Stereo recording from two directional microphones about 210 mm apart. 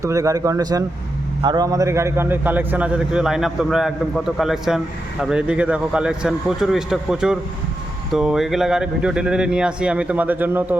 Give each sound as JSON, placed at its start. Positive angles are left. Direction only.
{"t": 0.0, "sound": "a man's voice", "side_deg": -15}